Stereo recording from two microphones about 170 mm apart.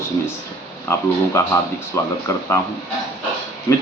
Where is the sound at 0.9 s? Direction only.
15° left (ahead or behind).